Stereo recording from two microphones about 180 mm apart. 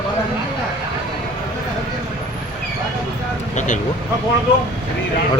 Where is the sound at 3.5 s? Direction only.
45° left (ahead or behind).